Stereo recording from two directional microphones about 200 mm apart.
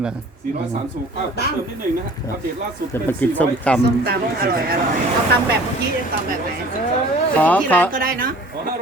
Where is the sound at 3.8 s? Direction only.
50° right (ahead or behind).